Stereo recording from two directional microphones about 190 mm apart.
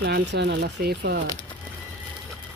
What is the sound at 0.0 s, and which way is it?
Speech, 65° right (ahead or behind).